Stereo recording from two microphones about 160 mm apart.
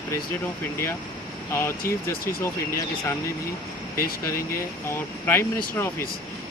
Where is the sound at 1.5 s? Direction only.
15° left (ahead or behind).